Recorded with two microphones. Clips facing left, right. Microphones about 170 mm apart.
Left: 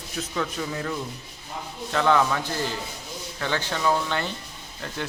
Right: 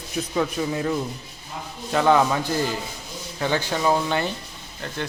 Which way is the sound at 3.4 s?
15° right (ahead or behind).